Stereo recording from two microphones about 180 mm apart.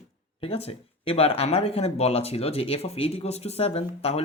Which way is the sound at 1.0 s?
35° left (ahead or behind).